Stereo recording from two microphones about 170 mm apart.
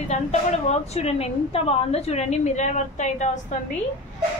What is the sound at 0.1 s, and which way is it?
A woman's voice, 40° left (ahead or behind).